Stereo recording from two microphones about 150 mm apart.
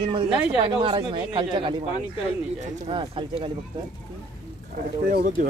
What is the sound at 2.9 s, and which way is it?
Speech, 35° right (ahead or behind).